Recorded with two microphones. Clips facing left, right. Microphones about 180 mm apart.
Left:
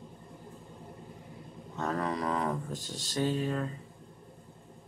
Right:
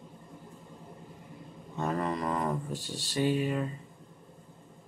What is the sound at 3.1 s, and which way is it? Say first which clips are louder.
Speech: right 2 dB; 10° right (ahead or behind).